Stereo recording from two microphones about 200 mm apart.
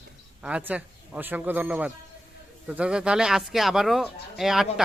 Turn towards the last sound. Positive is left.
turn(degrees=0)  # may be behind; listen again after turning